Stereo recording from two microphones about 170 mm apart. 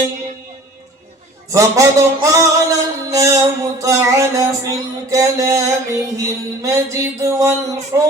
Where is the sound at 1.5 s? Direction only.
20° right (ahead or behind).